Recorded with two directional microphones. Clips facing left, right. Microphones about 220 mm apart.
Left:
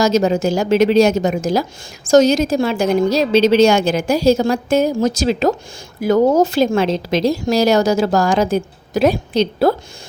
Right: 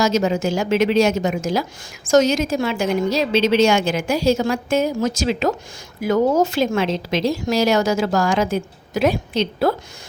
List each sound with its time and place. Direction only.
0.0 s a woman's voice: 40° left (ahead or behind)